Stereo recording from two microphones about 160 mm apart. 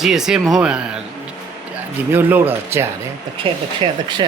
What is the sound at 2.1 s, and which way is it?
Speech, 10° right (ahead or behind).